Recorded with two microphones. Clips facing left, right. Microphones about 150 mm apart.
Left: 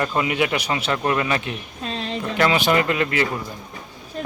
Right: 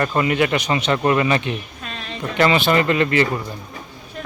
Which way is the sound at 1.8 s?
30° left (ahead or behind).